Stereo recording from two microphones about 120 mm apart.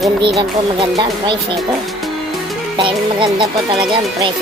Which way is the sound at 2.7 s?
45° right (ahead or behind).